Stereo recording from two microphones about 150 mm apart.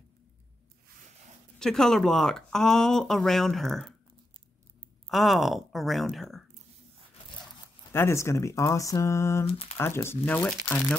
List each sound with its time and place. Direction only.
1.6 s speech: 5° left (ahead or behind)
5.0 s speech: centre (ahead or behind)
7.9 s speech: 20° left (ahead or behind)